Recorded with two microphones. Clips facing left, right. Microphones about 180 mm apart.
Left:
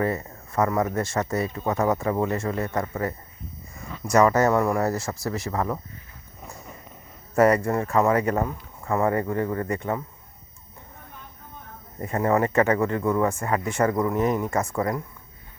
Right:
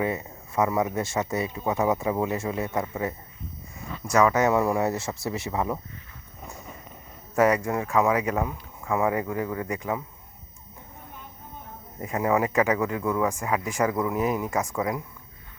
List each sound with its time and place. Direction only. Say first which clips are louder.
0.0 s speech: left 2 dB; 5° right (ahead or behind)
4.1 s speech: left 2 dB; 5° right (ahead or behind)
7.5 s speech: left 2 dB; 5° right (ahead or behind)
11.9 s speech: left 2 dB; 5° right (ahead or behind)